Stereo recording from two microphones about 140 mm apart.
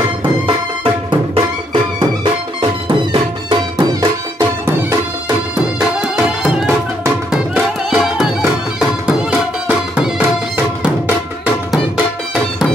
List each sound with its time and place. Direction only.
0.2 s music: 35° right (ahead or behind)
4.0 s music: 20° right (ahead or behind)
6.4 s music: 5° right (ahead or behind)